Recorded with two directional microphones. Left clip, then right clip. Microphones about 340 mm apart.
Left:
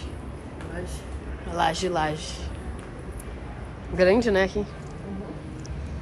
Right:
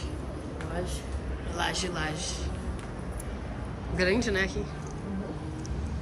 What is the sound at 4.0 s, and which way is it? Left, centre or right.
Speech, centre.